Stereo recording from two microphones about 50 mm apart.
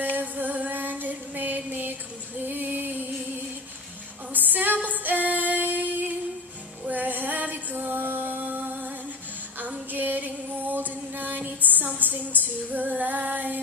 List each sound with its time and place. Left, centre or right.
0.2 s music: right
2.4 s female singing: right
4.3 s female singing: right
4.8 s music: right
6.9 s female singing: right
9.6 s music: right
12.0 s female singing: right